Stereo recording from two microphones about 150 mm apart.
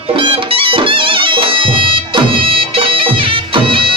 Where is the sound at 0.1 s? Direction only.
40° right (ahead or behind).